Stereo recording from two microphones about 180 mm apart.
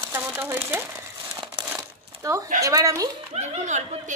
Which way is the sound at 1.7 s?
15° right (ahead or behind).